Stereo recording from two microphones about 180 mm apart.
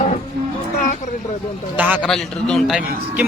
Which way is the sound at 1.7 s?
10° right (ahead or behind).